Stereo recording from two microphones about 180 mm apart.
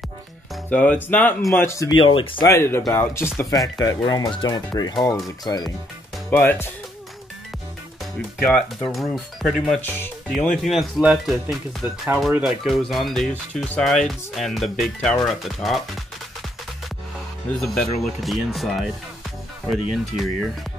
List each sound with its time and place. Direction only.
0.7 s speech: 5° left (ahead or behind); by 2.2 s 25° left (ahead or behind)
2.3 s speech: 15° left (ahead or behind)
8.5 s speech: centre (ahead or behind)
17.6 s speech: centre (ahead or behind)